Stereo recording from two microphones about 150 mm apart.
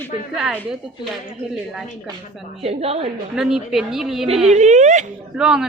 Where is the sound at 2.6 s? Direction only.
40° right (ahead or behind).